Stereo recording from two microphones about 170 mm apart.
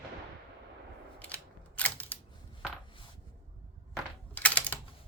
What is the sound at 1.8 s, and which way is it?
Single-lens reflex camera, 10° left (ahead or behind).